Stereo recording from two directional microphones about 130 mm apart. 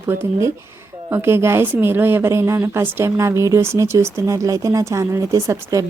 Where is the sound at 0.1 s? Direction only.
20° right (ahead or behind).